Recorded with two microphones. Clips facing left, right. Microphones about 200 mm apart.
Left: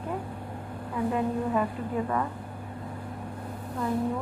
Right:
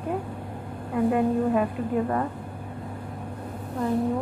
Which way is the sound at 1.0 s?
55° right (ahead or behind).